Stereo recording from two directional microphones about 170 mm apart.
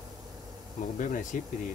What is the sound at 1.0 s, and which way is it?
Speech, 50° left (ahead or behind).